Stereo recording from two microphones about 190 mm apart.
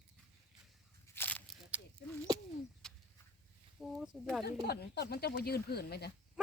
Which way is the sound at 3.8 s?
Centre (ahead or behind).